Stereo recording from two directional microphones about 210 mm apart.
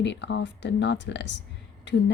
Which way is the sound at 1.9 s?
55° left (ahead or behind).